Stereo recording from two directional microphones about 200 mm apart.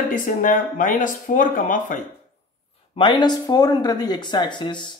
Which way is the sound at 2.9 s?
25° left (ahead or behind).